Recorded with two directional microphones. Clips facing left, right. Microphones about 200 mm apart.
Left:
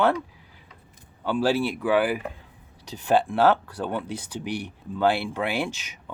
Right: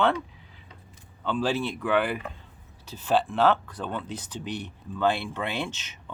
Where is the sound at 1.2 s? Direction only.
10° left (ahead or behind).